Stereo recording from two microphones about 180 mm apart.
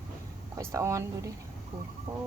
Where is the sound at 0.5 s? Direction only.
15° right (ahead or behind).